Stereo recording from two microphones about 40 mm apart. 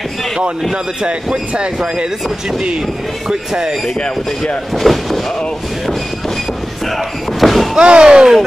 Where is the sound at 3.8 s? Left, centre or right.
Left.